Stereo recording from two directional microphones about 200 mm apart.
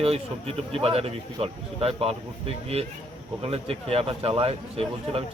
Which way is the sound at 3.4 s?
30° right (ahead or behind).